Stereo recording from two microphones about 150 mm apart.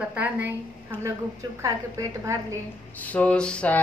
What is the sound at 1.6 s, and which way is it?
Speech, 20° right (ahead or behind).